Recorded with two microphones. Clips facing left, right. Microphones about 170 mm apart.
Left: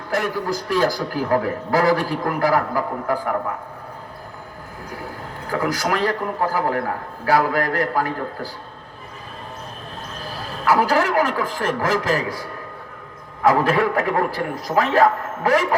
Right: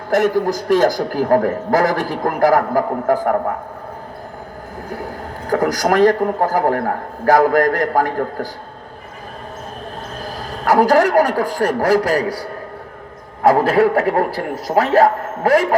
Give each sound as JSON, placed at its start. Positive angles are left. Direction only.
{"t": 0.1, "sound": "a man's voice", "side_deg": -45}
{"t": 5.5, "sound": "a man's voice", "side_deg": -45}
{"t": 10.3, "sound": "a man's voice", "side_deg": -45}